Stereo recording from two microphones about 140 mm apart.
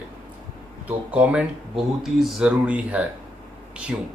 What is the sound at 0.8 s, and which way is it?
Speech, 10° right (ahead or behind).